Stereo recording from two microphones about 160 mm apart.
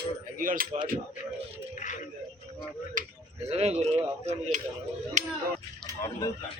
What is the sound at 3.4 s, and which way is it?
Speech, 40° right (ahead or behind).